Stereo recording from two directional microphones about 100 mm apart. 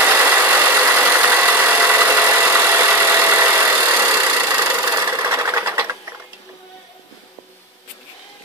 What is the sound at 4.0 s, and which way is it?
Sewing machine, 20° right (ahead or behind).